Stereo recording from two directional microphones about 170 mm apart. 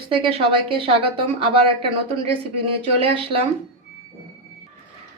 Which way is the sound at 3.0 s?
35° right (ahead or behind).